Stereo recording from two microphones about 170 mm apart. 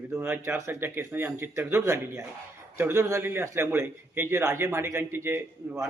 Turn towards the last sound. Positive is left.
turn(degrees=-15)  # may be behind; listen again after turning